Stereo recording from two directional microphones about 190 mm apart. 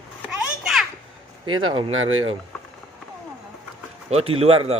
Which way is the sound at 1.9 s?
90° right.